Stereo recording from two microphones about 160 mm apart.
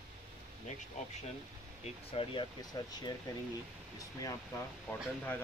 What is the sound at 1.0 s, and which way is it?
Speech, 45° left (ahead or behind).